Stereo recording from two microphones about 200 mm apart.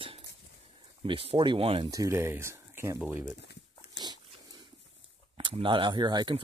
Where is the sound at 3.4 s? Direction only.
60° left (ahead or behind).